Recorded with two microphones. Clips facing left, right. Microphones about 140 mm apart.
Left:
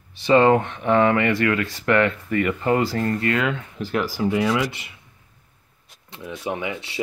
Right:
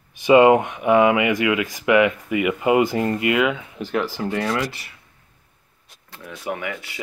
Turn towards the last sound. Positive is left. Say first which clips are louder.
# left 3 dB
turn(degrees=25)  # may be behind; listen again after turning